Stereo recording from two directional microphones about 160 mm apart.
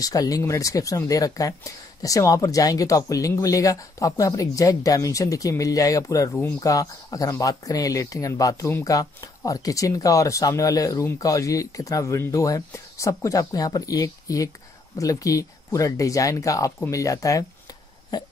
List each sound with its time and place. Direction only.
0.0 s speech: 20° left (ahead or behind)